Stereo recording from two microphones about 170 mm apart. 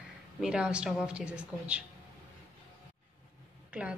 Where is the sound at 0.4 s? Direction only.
5° right (ahead or behind).